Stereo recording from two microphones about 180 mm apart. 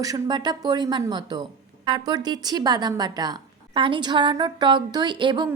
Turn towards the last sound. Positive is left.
turn(degrees=-25)  # may be behind; listen again after turning